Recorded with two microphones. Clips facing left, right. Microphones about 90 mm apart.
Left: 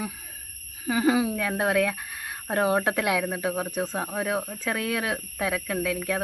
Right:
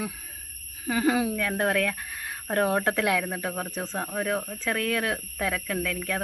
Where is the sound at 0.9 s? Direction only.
5° left (ahead or behind).